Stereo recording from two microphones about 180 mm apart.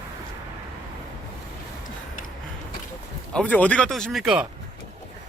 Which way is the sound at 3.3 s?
5° left (ahead or behind).